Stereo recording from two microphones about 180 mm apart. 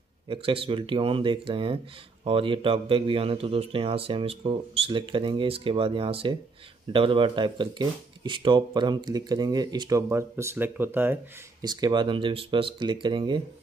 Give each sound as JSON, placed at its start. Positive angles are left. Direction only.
{"t": 0.3, "sound": "speech", "side_deg": -30}
{"t": 11.6, "sound": "speech", "side_deg": -25}